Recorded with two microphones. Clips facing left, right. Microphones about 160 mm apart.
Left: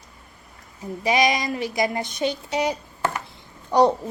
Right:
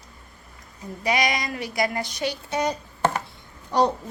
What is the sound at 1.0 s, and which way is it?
A woman's voice, 20° left (ahead or behind).